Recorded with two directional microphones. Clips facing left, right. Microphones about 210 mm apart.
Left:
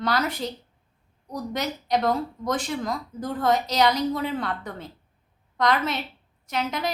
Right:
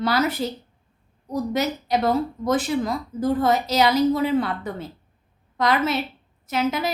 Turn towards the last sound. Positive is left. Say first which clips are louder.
# right 5 dB
turn(degrees=-5)  # may be behind; listen again after turning